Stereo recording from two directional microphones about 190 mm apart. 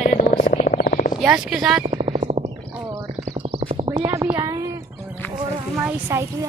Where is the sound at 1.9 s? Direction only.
40° right (ahead or behind).